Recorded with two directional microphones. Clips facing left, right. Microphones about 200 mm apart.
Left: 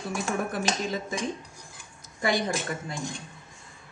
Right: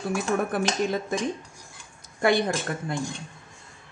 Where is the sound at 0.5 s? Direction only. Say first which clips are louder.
Right 4 dB; 55° right (ahead or behind).